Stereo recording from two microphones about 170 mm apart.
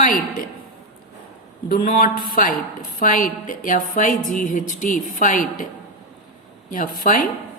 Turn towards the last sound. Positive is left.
turn(degrees=55)  # may be behind; listen again after turning